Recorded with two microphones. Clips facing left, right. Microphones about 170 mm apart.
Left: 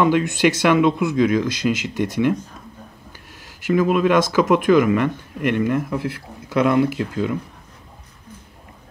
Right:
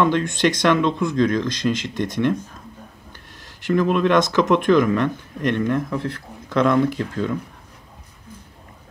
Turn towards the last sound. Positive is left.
turn(degrees=5)  # may be behind; listen again after turning